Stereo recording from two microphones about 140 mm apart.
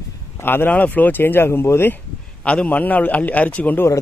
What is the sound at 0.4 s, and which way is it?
A man's voice, 15° left (ahead or behind).